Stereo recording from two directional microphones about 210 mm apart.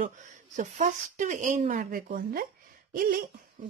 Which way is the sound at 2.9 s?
40° right (ahead or behind).